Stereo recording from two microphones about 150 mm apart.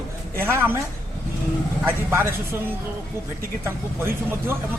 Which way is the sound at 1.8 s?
15° right (ahead or behind).